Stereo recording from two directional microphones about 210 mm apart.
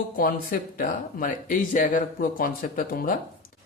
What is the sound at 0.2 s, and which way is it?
Speech, 40° left (ahead or behind).